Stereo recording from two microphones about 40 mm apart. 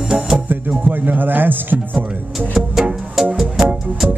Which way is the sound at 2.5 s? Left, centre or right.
Centre.